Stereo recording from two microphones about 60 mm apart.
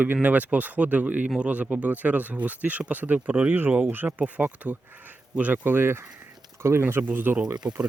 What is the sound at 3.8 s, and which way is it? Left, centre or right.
Speech, right.